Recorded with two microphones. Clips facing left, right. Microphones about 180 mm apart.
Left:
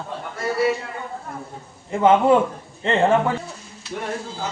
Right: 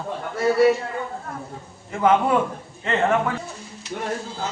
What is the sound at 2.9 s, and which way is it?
Speech, 30° left (ahead or behind).